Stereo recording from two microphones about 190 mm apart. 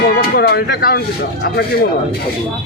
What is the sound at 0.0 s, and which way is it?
Speech, 55° left (ahead or behind).